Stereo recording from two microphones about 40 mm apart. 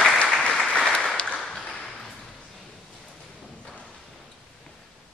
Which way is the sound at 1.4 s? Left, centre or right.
Centre.